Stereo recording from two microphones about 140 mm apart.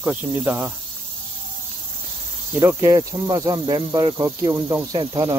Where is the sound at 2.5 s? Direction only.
20° right (ahead or behind).